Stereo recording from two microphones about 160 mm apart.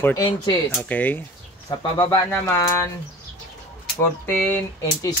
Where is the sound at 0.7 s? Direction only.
10° left (ahead or behind).